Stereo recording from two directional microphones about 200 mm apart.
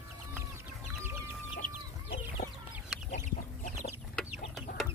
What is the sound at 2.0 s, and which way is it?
Chicken, 35° left (ahead or behind).